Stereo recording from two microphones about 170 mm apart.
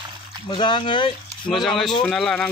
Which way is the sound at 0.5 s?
30° left (ahead or behind).